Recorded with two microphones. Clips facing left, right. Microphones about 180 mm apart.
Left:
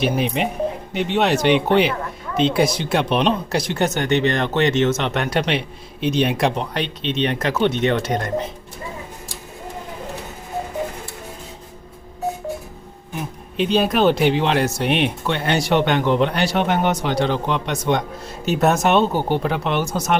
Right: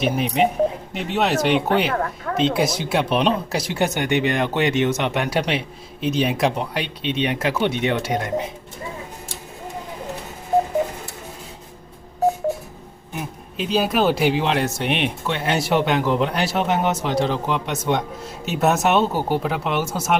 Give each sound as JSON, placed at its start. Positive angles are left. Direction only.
{"t": 0.0, "sound": "speech", "side_deg": 0}
{"t": 1.9, "sound": "speech", "side_deg": -70}
{"t": 2.3, "sound": "speech", "side_deg": 0}
{"t": 13.6, "sound": "speech", "side_deg": -5}